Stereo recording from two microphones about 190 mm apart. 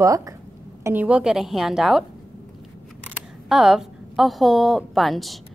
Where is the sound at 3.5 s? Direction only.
Centre (ahead or behind).